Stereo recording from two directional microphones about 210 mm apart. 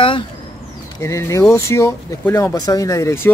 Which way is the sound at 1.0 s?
15° left (ahead or behind).